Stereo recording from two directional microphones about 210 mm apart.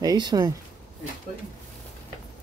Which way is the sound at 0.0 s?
20° right (ahead or behind).